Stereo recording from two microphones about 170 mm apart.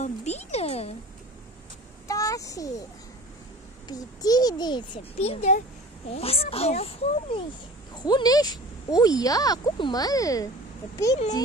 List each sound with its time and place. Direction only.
0.0 s music: 40° left (ahead or behind)
2.0 s a sound: 20° left (ahead or behind)
3.8 s speech: 20° left (ahead or behind)
5.2 s a child's voice: 40° left (ahead or behind); by 10.5 s 20° left (ahead or behind)